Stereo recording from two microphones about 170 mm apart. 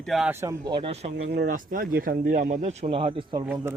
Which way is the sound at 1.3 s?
55° right (ahead or behind).